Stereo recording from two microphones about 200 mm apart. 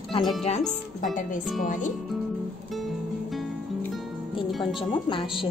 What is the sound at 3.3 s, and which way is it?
Music, centre (ahead or behind).